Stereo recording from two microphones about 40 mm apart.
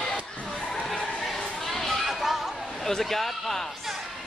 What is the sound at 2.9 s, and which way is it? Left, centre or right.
Speech, centre.